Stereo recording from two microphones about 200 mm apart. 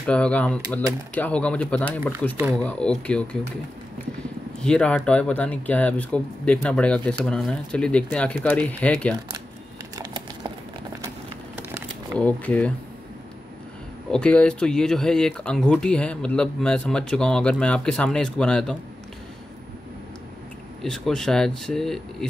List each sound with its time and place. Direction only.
0.0 s speech: 5° left (ahead or behind)
4.6 s speech: 5° left (ahead or behind)
9.9 s a sound: 25° right (ahead or behind)
11.5 s crumpling: 15° right (ahead or behind)
12.2 s speech: 5° left (ahead or behind)
14.1 s speech: 5° left (ahead or behind)
20.8 s speech: 5° left (ahead or behind)